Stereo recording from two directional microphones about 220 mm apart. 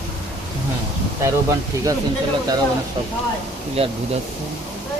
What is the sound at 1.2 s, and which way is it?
Speech, 15° right (ahead or behind).